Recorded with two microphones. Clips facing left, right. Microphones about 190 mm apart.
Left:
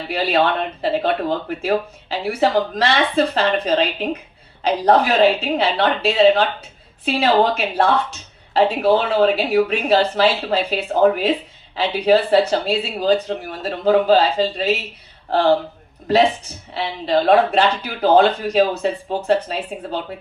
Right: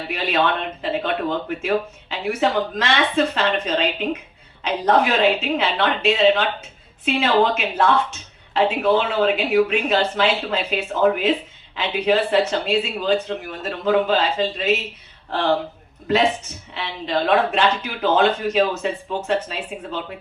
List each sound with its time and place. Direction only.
0.1 s speech: 35° left (ahead or behind)
16.7 s speech: 35° left (ahead or behind)